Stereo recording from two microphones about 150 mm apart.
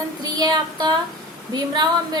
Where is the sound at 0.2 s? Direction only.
25° right (ahead or behind).